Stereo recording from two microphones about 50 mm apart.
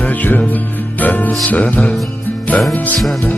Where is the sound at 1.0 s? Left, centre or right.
Left.